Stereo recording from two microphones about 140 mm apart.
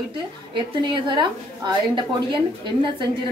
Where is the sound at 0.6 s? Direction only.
35° right (ahead or behind).